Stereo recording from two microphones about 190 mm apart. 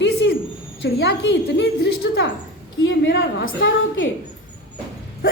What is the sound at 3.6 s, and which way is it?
Speech, 90° left.